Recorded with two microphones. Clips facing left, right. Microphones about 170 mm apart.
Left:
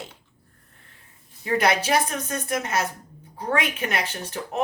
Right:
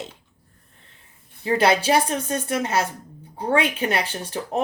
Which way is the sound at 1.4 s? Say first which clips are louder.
Right 3 dB; 30° right (ahead or behind).